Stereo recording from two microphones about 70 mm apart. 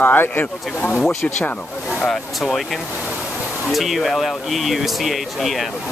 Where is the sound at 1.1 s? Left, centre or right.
Left.